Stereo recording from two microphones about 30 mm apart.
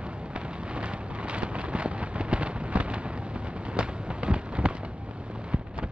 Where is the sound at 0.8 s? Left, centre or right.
Right.